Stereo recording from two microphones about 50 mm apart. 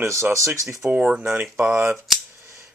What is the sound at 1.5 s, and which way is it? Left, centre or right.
Speech, right.